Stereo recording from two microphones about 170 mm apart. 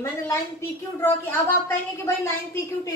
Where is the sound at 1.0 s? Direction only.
15° left (ahead or behind).